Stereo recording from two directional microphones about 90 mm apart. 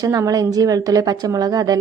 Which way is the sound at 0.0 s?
40° right (ahead or behind).